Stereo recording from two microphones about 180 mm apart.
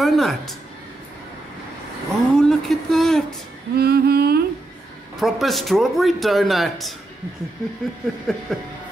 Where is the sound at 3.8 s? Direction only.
60° right (ahead or behind).